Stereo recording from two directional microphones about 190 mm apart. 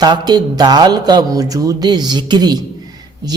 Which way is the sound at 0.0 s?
20° right (ahead or behind).